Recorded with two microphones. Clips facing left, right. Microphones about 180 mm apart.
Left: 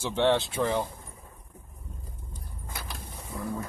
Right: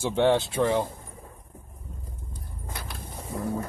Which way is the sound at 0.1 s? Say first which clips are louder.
Right 2 dB; 10° right (ahead or behind).